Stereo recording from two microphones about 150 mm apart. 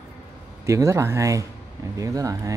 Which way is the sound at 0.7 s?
20° right (ahead or behind).